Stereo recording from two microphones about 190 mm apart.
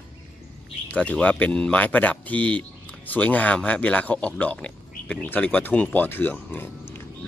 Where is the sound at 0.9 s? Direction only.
5° left (ahead or behind).